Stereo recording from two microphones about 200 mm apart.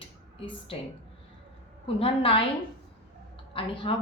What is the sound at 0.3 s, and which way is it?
Speech, 25° left (ahead or behind).